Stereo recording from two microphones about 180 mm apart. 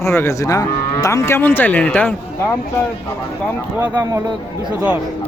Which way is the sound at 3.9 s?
20° right (ahead or behind).